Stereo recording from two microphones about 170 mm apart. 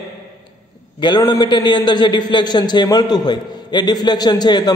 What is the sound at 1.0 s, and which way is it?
A man's voice, 25° left (ahead or behind).